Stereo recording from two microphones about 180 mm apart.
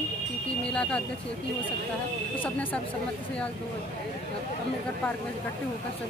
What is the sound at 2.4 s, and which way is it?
Speech, 10° left (ahead or behind).